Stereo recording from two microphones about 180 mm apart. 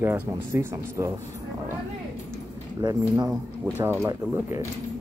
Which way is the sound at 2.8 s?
20° right (ahead or behind).